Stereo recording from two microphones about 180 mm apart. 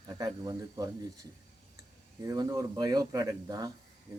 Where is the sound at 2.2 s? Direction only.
20° right (ahead or behind).